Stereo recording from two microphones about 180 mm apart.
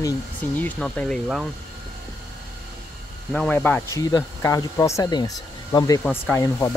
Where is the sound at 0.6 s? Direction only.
5° left (ahead or behind).